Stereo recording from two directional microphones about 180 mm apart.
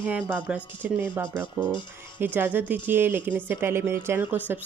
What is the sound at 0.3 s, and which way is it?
Speech, 10° right (ahead or behind).